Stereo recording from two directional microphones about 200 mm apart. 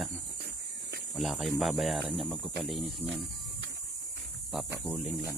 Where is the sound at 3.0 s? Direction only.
60° right (ahead or behind).